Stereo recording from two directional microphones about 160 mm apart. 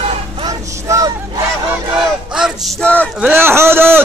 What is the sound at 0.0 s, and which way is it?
Vehicle, 35° right (ahead or behind).